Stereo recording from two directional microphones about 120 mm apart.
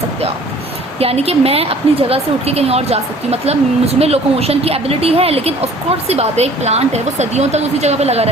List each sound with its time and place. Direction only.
0.9 s speech: 55° right (ahead or behind)